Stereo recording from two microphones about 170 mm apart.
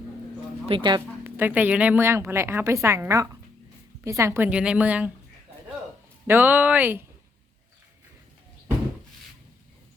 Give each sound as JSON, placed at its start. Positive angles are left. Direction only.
{"t": 0.7, "sound": "speech", "side_deg": -25}
{"t": 1.2, "sound": "a woman's voice", "side_deg": -10}
{"t": 6.2, "sound": "a woman's voice", "side_deg": -10}